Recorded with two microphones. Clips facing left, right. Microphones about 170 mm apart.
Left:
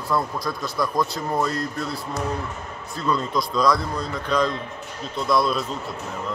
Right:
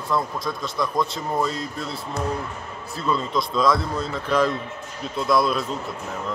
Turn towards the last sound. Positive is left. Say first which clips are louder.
# right 1 dB
turn(degrees=0)  # may be behind; listen again after turning